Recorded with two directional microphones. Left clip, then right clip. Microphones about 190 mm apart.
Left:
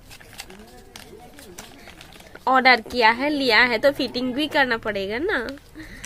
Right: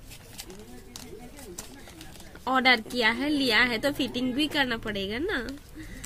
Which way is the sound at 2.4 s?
25° right (ahead or behind).